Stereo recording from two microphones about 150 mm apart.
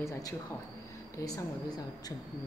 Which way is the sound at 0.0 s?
20° left (ahead or behind).